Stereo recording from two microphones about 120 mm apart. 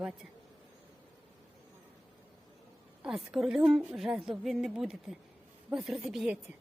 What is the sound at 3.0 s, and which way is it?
A woman's voice, 5° right (ahead or behind).